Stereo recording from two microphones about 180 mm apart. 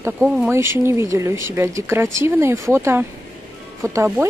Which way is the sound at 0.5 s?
15° right (ahead or behind).